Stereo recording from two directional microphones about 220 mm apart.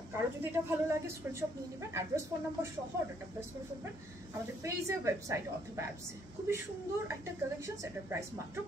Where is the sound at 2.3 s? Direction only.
15° right (ahead or behind).